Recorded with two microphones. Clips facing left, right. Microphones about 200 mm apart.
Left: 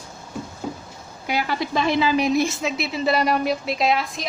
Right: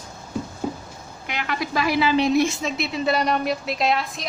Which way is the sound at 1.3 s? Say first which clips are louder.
Left 2 dB; 30° left (ahead or behind).